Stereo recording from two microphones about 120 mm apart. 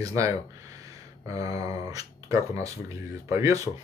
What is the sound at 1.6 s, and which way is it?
Speech, 30° right (ahead or behind).